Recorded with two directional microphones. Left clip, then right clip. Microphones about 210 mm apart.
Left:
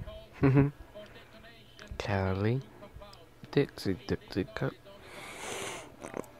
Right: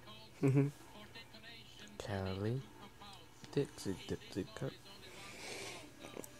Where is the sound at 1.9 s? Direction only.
15° left (ahead or behind).